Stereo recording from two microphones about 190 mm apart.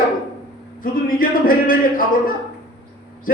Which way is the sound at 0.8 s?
50° left (ahead or behind).